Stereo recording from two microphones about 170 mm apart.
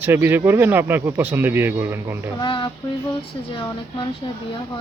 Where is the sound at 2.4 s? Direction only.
30° left (ahead or behind).